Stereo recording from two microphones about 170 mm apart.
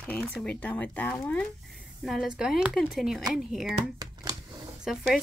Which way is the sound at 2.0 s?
5° right (ahead or behind).